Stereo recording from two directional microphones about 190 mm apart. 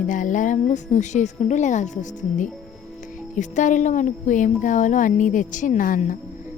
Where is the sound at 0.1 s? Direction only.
40° left (ahead or behind).